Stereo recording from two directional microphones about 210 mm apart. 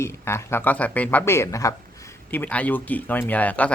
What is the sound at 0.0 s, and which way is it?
A man's voice, 10° left (ahead or behind).